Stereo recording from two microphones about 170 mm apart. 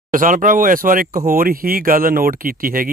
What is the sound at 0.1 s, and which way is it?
Speech, 50° right (ahead or behind).